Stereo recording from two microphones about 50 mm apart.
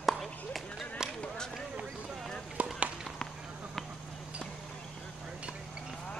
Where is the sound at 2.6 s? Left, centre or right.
Right.